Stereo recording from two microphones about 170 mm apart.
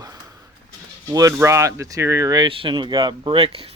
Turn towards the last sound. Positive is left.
turn(degrees=-35)  # may be behind; listen again after turning